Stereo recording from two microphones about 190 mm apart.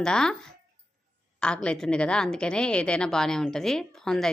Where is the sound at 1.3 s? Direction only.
5° left (ahead or behind).